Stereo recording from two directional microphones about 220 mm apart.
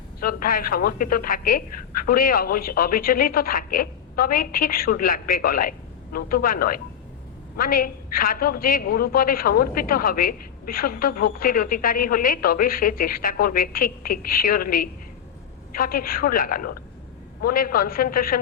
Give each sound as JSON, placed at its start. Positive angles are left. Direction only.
{"t": 0.2, "sound": "a woman's voice", "side_deg": 40}